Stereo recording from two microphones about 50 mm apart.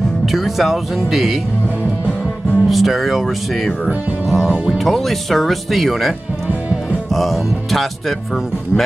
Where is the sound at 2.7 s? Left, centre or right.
Centre.